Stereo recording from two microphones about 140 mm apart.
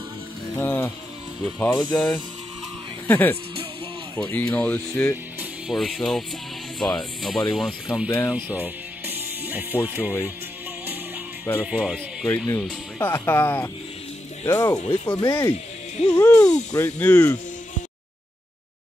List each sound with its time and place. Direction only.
0.6 s music: 15° left (ahead or behind)
1.4 s speech: 10° left (ahead or behind)
5.7 s speech: centre (ahead or behind)
8.3 s music: 10° right (ahead or behind)
9.8 s speech: 15° right (ahead or behind)
11.6 s speech: 5° right (ahead or behind)
12.3 s speech: 10° left (ahead or behind)
14.4 s speech: 25° left (ahead or behind)
15.5 s music: 45° left (ahead or behind)
16.2 s speech: 20° left (ahead or behind)